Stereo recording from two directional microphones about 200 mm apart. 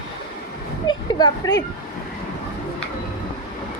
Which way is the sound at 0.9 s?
20° left (ahead or behind).